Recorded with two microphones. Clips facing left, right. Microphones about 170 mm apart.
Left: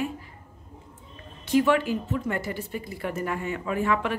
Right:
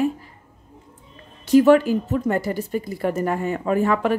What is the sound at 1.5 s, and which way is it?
Speech, 40° right (ahead or behind).